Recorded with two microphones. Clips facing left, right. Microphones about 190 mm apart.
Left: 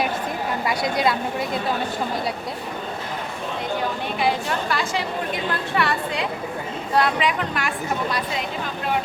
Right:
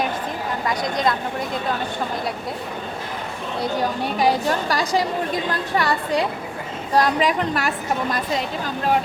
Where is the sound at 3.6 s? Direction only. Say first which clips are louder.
Right 4 dB; 40° right (ahead or behind).